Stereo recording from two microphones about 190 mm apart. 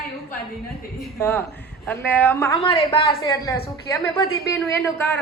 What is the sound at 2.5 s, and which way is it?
A woman's voice, 30° left (ahead or behind).